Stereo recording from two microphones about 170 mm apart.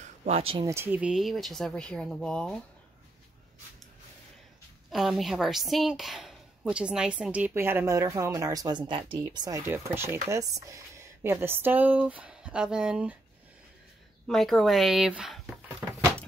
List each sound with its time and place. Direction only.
0.0 s speech: 40° right (ahead or behind)
0.7 s speech: 15° right (ahead or behind); by 2.6 s 5° left (ahead or behind)
4.9 s a woman's voice: centre (ahead or behind)
14.2 s speech: 5° left (ahead or behind)